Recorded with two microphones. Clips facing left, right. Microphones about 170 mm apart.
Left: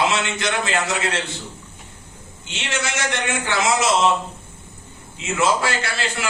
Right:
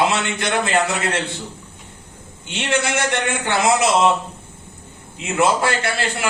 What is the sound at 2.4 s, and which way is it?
A man's voice, 55° right (ahead or behind).